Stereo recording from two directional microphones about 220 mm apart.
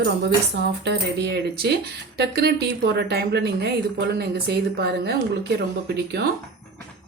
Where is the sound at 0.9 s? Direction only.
50° right (ahead or behind).